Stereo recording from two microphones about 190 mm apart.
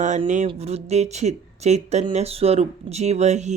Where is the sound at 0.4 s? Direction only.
35° right (ahead or behind).